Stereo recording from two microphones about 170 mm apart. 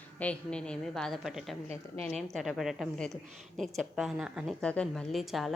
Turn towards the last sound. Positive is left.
turn(degrees=0)  # may be behind; listen again after turning